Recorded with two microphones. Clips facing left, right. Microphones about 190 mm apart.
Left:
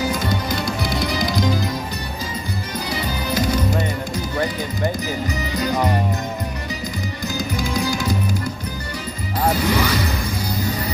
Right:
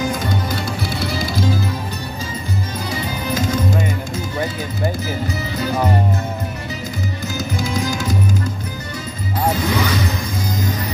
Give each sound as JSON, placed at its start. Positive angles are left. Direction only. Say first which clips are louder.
{"t": 0.1, "sound": "music", "louder": "even", "side_deg": 10}
{"t": 3.3, "sound": "music", "louder": "even", "side_deg": 10}
{"t": 7.3, "sound": "music", "louder": "even", "side_deg": 15}
{"t": 9.5, "sound": "music", "louder": "even", "side_deg": 10}